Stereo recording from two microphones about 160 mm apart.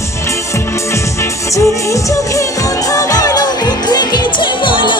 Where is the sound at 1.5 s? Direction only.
20° left (ahead or behind).